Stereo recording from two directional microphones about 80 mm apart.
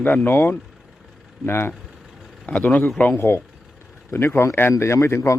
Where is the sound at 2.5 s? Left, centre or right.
Centre.